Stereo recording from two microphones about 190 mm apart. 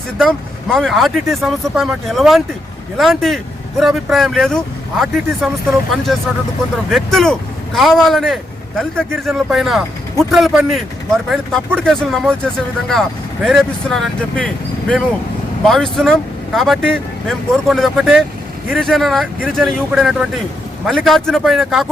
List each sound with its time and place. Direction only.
0.2 s speech: centre (ahead or behind)
6.9 s speech: centre (ahead or behind)